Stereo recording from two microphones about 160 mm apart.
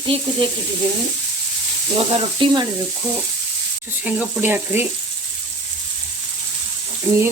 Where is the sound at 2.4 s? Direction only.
30° right (ahead or behind).